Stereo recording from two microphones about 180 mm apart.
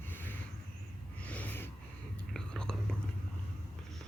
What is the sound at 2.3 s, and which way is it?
Whispering, 5° left (ahead or behind).